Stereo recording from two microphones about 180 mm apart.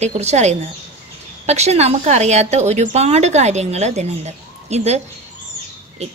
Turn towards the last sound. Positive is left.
turn(degrees=-40)  # may be behind; listen again after turning